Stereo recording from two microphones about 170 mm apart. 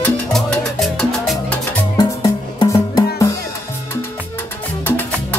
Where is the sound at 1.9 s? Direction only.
20° left (ahead or behind).